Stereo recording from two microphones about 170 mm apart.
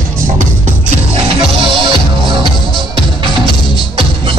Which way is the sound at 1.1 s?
35° right (ahead or behind).